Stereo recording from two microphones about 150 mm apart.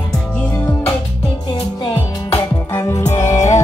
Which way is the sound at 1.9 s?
20° left (ahead or behind).